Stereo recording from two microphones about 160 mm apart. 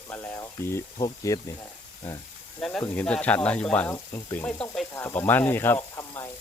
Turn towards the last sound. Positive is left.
turn(degrees=15)  # may be behind; listen again after turning